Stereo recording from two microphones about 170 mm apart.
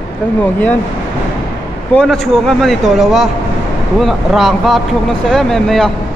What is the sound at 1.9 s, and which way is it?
A man's voice, 5° left (ahead or behind).